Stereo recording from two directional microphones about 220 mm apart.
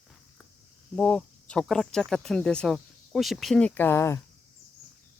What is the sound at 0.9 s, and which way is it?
Speech, 5° left (ahead or behind).